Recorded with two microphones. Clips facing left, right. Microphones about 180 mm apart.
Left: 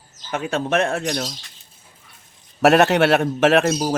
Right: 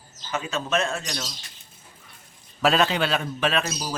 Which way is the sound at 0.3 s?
60° left (ahead or behind).